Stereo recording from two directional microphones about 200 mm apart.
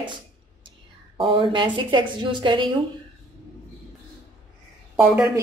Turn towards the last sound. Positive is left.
turn(degrees=-10)  # may be behind; listen again after turning